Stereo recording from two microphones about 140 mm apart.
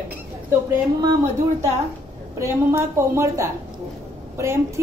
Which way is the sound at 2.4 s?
20° right (ahead or behind).